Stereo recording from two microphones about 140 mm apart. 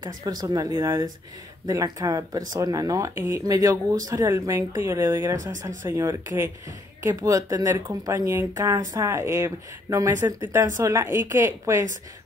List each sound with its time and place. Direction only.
0.0 s speech: 30° right (ahead or behind)